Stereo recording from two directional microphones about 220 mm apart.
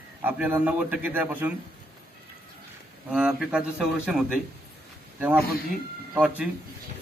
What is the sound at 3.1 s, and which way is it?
A man's voice, 5° right (ahead or behind).